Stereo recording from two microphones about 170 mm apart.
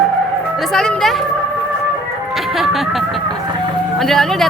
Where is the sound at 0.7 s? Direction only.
5° left (ahead or behind).